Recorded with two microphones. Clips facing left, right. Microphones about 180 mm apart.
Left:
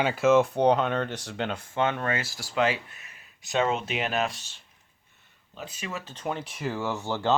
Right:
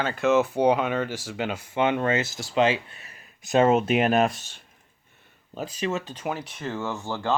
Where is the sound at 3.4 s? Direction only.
50° right (ahead or behind).